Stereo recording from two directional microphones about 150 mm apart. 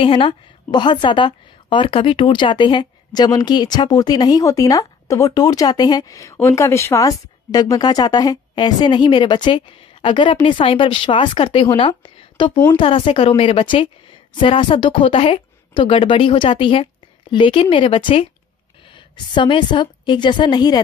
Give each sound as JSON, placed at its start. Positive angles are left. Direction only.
{"t": 0.0, "sound": "a woman's voice", "side_deg": 35}